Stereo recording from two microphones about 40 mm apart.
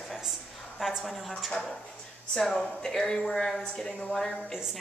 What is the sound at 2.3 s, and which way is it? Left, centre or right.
Speech, centre.